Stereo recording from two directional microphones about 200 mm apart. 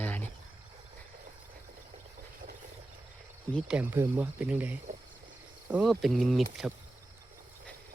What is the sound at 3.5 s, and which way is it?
Speech, 5° left (ahead or behind).